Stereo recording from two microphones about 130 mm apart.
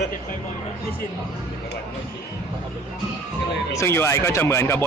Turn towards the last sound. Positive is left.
turn(degrees=20)  # may be behind; listen again after turning